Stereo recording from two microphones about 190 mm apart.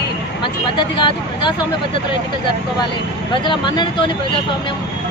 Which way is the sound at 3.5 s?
25° left (ahead or behind).